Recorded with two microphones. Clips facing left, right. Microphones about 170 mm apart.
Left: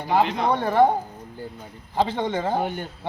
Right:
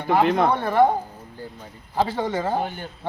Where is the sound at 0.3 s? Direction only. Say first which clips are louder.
Right 5 dB; 55° right (ahead or behind).